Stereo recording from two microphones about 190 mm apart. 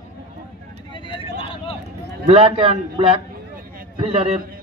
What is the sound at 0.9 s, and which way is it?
Vehicle, 25° left (ahead or behind).